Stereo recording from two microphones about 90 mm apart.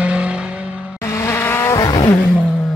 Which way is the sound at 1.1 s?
30° left (ahead or behind).